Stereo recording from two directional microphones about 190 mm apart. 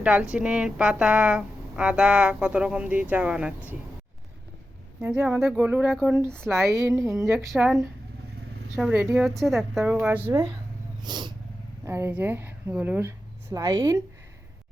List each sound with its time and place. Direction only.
0.0 s a woman's voice: 5° right (ahead or behind)
4.9 s speech: 10° right (ahead or behind)
6.1 s speech: 15° right (ahead or behind)
6.3 s a woman's voice: 5° left (ahead or behind)
6.7 s speech: 15° right (ahead or behind)
7.3 s a woman's voice: centre (ahead or behind)
11.0 s cat: 25° right (ahead or behind)
11.9 s speech: 10° right (ahead or behind)